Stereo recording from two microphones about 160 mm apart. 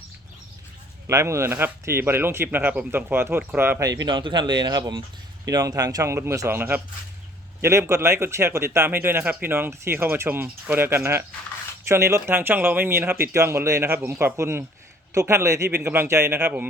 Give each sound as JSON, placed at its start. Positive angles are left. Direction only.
{"t": 1.0, "sound": "speech", "side_deg": -20}